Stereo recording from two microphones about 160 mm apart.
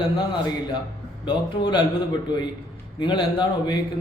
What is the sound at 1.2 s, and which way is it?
Speech, 30° left (ahead or behind).